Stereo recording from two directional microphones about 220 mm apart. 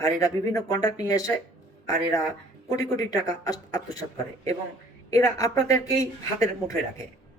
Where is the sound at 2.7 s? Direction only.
15° left (ahead or behind).